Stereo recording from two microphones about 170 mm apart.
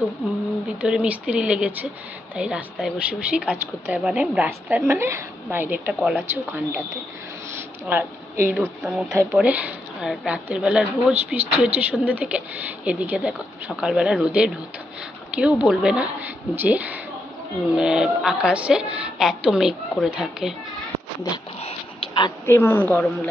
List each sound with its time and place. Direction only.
0.7 s a woman's voice: 5° right (ahead or behind)
7.8 s a woman's voice: 15° right (ahead or behind)
21.5 s a sound: 35° left (ahead or behind)
22.5 s speech: 15° left (ahead or behind)